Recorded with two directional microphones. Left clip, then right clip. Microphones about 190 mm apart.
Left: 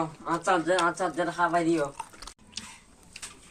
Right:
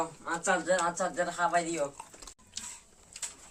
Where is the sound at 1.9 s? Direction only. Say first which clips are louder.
Left 7 dB; centre (ahead or behind).